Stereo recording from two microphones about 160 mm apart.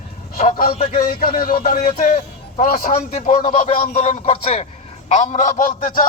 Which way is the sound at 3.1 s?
45° left (ahead or behind).